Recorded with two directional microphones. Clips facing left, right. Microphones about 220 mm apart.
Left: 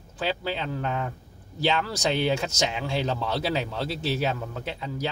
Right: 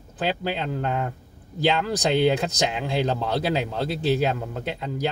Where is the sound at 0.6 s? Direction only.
15° right (ahead or behind).